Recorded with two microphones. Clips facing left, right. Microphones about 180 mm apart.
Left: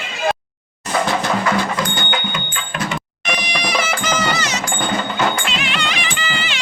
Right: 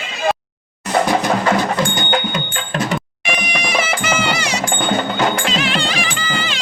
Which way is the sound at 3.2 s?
10° right (ahead or behind).